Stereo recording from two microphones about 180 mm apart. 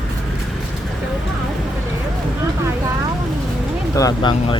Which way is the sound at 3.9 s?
20° left (ahead or behind).